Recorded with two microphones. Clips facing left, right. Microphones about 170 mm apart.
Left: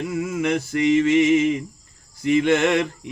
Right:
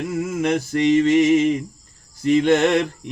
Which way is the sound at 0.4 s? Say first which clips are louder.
Right 2 dB; 35° right (ahead or behind).